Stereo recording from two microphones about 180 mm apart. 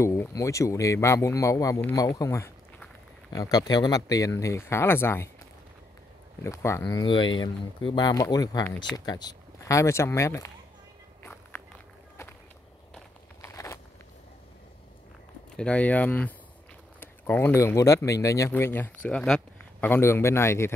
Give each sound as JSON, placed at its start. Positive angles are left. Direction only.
{"t": 0.0, "sound": "speech", "side_deg": 15}
{"t": 6.4, "sound": "speech", "side_deg": 15}
{"t": 11.2, "sound": "walk", "side_deg": 10}
{"t": 13.4, "sound": "a sound", "side_deg": 15}
{"t": 15.5, "sound": "speech", "side_deg": 5}